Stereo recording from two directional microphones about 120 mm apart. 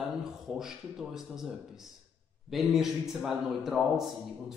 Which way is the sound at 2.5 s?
Centre (ahead or behind).